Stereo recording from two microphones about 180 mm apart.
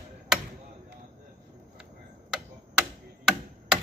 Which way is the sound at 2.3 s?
5° right (ahead or behind).